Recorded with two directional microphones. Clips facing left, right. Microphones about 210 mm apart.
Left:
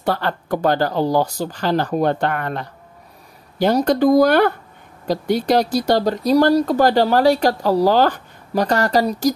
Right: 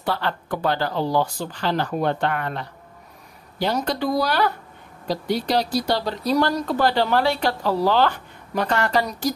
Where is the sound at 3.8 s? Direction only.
50° left (ahead or behind).